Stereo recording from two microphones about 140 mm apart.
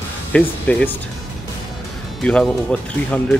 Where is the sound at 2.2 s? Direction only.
5° left (ahead or behind).